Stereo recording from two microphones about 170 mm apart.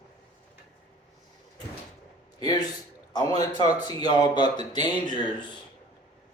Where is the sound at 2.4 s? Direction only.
25° left (ahead or behind).